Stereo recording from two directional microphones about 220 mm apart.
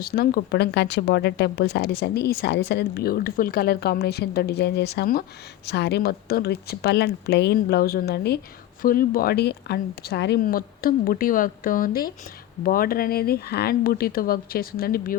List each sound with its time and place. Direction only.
0.0 s a woman's voice: 40° left (ahead or behind)